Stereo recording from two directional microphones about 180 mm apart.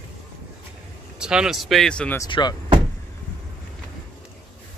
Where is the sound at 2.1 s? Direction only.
25° left (ahead or behind).